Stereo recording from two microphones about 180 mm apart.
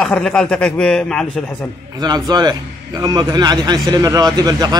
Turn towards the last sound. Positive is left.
turn(degrees=-20)  # may be behind; listen again after turning